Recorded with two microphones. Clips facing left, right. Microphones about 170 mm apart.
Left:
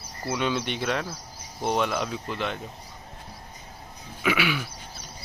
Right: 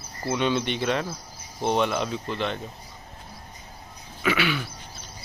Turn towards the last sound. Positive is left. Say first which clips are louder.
# right 1 dB
turn(degrees=10)  # may be behind; listen again after turning